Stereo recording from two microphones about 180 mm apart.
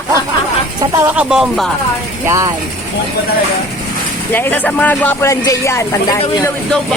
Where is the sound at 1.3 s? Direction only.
Centre (ahead or behind).